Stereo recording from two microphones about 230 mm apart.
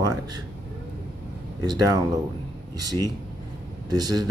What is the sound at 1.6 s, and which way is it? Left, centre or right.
Speech, centre.